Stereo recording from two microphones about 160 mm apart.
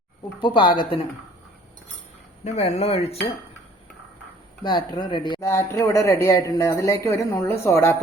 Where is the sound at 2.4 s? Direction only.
45° left (ahead or behind).